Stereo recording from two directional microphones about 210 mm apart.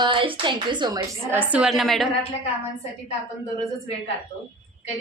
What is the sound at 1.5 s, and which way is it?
Speech, 5° right (ahead or behind).